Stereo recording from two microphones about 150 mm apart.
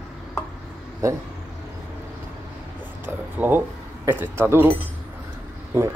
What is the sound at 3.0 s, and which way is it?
Speech, 15° right (ahead or behind).